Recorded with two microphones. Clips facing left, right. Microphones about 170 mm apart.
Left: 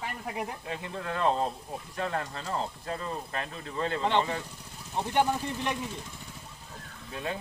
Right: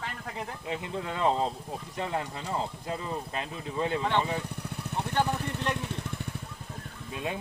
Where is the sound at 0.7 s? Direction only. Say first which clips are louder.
Right 1 dB; 20° right (ahead or behind).